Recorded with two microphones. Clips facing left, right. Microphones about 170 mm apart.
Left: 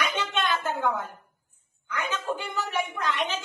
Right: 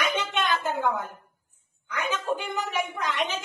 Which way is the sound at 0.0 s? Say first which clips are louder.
Right 1 dB; 20° right (ahead or behind).